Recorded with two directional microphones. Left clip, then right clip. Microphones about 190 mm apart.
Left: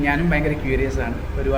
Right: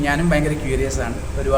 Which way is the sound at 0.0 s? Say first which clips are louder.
Right 1 dB; 20° right (ahead or behind).